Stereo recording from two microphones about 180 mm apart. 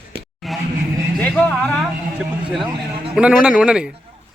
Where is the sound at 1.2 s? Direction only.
5° left (ahead or behind).